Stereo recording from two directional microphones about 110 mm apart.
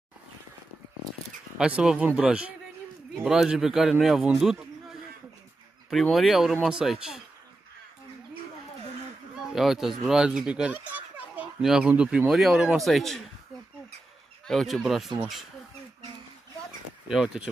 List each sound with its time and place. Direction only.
1.6 s a man's voice: 10° right (ahead or behind)
6.1 s a man's voice: centre (ahead or behind)
9.5 s a man's voice: 5° right (ahead or behind)
14.4 s a man's voice: 5° left (ahead or behind)
17.1 s speech: 5° right (ahead or behind)